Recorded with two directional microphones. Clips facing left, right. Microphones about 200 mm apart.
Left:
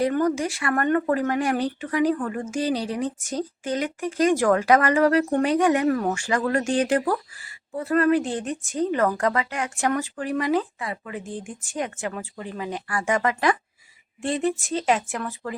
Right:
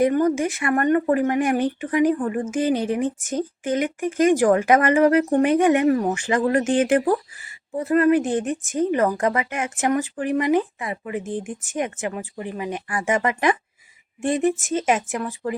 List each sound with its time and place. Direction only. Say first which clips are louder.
0.0 s speech: right 3 dB; 20° right (ahead or behind)
2.6 s speech: right 4 dB; 50° right (ahead or behind)
3.0 s speech: right 3 dB; 20° right (ahead or behind)